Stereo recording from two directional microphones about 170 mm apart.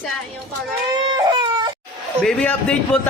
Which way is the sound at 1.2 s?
25° right (ahead or behind).